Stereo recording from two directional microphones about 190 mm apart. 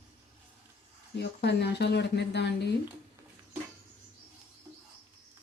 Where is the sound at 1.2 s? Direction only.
60° left (ahead or behind).